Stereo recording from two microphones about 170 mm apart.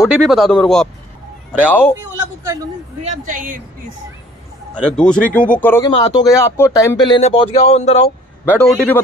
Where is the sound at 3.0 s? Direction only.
50° right (ahead or behind).